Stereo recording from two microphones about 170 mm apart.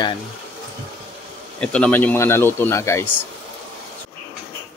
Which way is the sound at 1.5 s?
5° left (ahead or behind).